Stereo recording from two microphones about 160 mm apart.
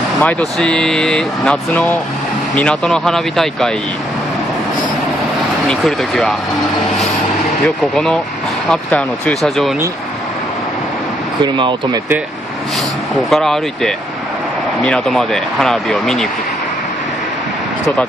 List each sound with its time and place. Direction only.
0.2 s speech: 5° left (ahead or behind)
5.7 s speech: centre (ahead or behind)
7.6 s speech: 5° left (ahead or behind)
11.4 s speech: 30° right (ahead or behind)
13.3 s speech: centre (ahead or behind)